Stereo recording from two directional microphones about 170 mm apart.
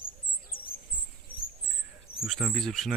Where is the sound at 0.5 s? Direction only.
60° left (ahead or behind).